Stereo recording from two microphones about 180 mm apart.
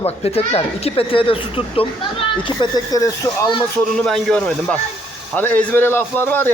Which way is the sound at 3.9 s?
5° left (ahead or behind).